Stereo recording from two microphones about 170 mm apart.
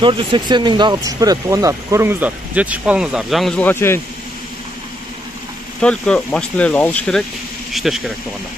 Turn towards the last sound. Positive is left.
turn(degrees=0)  # may be behind; listen again after turning